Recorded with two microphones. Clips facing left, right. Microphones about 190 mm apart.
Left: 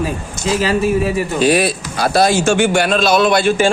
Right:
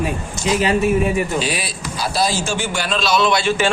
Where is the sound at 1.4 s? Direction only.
50° left (ahead or behind).